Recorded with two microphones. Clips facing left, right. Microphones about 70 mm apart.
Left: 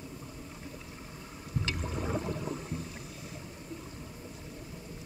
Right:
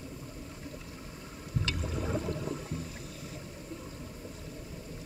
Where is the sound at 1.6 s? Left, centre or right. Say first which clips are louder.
Even; centre.